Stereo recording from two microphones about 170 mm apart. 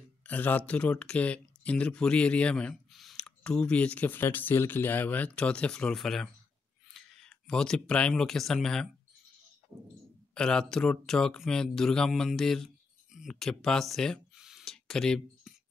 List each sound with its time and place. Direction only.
0.3 s speech: 10° left (ahead or behind)
10.3 s speech: 5° left (ahead or behind)